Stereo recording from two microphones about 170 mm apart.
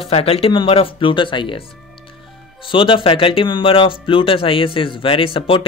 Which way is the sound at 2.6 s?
30° left (ahead or behind).